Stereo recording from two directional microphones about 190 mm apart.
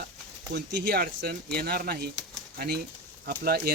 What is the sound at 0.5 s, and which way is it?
Speech, 55° right (ahead or behind).